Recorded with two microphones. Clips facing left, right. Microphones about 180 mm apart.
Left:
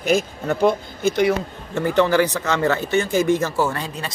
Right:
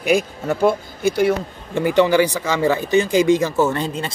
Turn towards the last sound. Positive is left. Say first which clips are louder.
# right 3 dB
turn(degrees=-20)  # may be behind; listen again after turning